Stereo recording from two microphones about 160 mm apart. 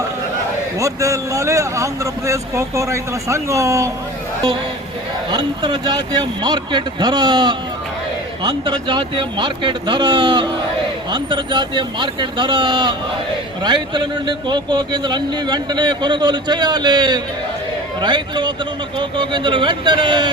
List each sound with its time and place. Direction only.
0.8 s a man's voice: 20° right (ahead or behind)
5.3 s a man's voice: 25° right (ahead or behind)